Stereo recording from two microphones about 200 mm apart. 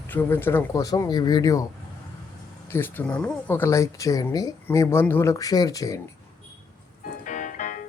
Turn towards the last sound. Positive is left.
turn(degrees=40)  # may be behind; listen again after turning